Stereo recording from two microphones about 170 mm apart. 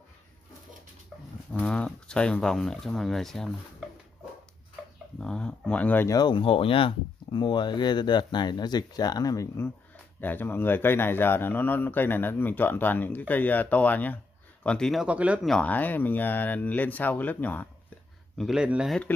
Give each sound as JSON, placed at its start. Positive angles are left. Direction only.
{"t": 1.5, "sound": "speech", "side_deg": 5}
{"t": 5.2, "sound": "speech", "side_deg": 5}
{"t": 6.1, "sound": "speech", "side_deg": 25}
{"t": 15.5, "sound": "speech", "side_deg": 10}
{"t": 18.4, "sound": "speech", "side_deg": -5}